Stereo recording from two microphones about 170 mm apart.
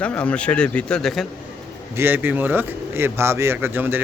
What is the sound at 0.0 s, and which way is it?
Speech, 5° left (ahead or behind).